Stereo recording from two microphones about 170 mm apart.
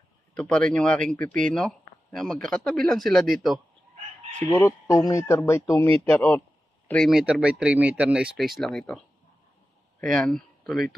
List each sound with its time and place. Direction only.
0.3 s speech: 5° left (ahead or behind)
4.4 s speech: 15° left (ahead or behind)